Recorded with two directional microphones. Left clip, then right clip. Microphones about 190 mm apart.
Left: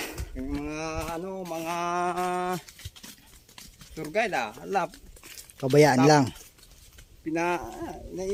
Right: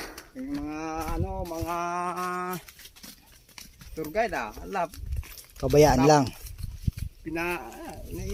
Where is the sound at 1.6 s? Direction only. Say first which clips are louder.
Left 2 dB; 5° left (ahead or behind).